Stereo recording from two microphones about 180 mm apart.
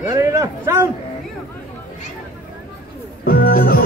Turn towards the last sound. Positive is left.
turn(degrees=55)  # may be behind; listen again after turning